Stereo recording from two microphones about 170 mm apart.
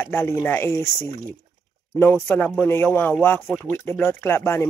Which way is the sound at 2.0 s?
10° left (ahead or behind).